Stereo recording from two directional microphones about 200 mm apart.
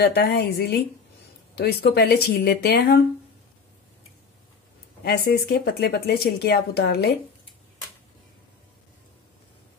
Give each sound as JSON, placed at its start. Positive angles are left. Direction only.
{"t": 0.0, "sound": "speech", "side_deg": 50}
{"t": 5.0, "sound": "speech", "side_deg": 55}